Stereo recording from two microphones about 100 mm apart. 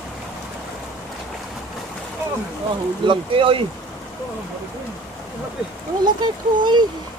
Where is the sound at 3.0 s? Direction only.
60° right (ahead or behind).